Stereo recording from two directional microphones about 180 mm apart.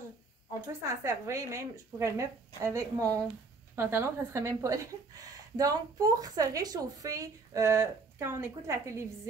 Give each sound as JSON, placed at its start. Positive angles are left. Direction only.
{"t": 0.7, "sound": "a woman's voice", "side_deg": -15}